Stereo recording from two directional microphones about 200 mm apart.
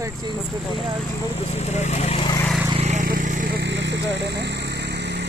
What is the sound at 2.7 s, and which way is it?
Vehicle, 35° right (ahead or behind).